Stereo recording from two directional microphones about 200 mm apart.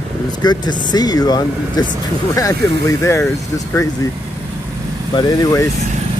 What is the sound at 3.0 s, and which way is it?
Speech, 15° left (ahead or behind).